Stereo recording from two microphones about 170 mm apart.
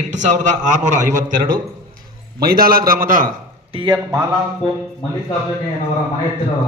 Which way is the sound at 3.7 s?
25° right (ahead or behind).